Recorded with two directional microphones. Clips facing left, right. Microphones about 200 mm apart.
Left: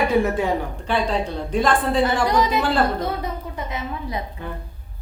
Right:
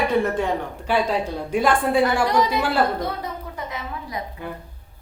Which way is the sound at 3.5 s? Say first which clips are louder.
Left 2 dB; 25° left (ahead or behind).